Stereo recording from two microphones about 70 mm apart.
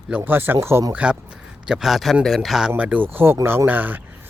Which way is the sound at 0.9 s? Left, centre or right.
Centre.